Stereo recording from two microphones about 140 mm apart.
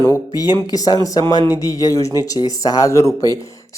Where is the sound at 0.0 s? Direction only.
25° left (ahead or behind).